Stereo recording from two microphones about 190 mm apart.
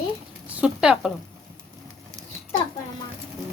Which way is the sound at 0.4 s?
5° right (ahead or behind).